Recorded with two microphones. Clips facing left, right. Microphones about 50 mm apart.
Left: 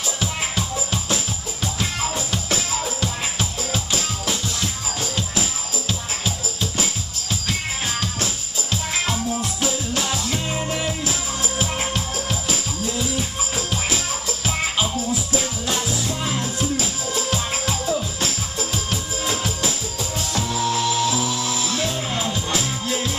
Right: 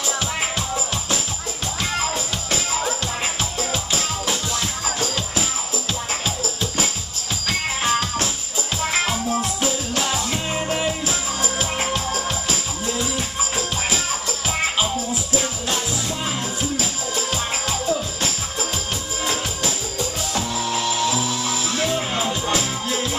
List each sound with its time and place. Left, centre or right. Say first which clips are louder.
0.2 s music: right 1 dB; centre
3.0 s music: even; centre
9.6 s music: right 1 dB; centre
17.8 s music: right 1 dB; centre
20.5 s music: left 4 dB; centre
21.9 s music: right 2 dB; centre